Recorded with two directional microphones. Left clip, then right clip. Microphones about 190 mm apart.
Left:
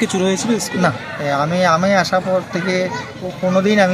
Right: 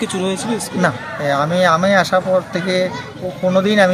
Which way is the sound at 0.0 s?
35° left (ahead or behind).